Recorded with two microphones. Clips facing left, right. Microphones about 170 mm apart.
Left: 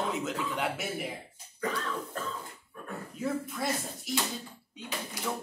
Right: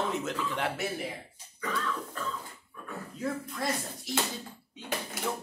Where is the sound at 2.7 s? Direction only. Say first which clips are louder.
Left 2 dB; 45° left (ahead or behind).